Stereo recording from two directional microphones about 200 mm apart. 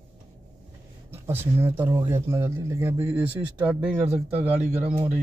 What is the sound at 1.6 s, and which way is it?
Speech, 10° right (ahead or behind).